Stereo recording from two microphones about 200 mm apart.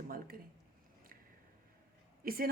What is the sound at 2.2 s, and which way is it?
Speech, 45° right (ahead or behind).